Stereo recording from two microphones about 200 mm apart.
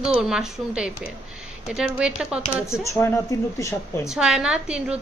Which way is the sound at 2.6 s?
15° left (ahead or behind).